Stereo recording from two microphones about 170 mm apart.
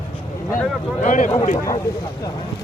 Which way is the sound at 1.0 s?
45° left (ahead or behind).